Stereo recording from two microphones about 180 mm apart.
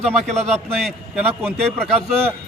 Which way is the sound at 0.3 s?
35° right (ahead or behind).